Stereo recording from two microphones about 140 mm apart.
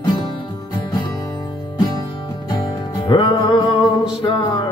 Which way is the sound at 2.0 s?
35° left (ahead or behind).